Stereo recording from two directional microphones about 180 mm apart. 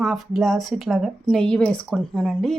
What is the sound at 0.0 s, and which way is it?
A woman's voice, centre (ahead or behind).